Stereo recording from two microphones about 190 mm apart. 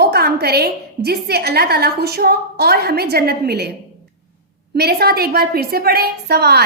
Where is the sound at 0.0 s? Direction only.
55° right (ahead or behind).